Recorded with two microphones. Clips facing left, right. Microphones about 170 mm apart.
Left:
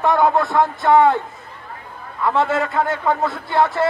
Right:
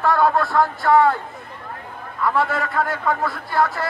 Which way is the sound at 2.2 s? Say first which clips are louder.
Left 3 dB; 25° left (ahead or behind).